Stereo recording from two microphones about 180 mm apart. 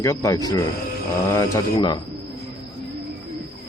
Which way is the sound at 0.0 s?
15° left (ahead or behind).